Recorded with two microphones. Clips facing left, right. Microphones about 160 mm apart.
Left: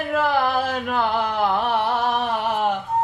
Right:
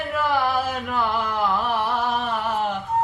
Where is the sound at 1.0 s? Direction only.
30° left (ahead or behind).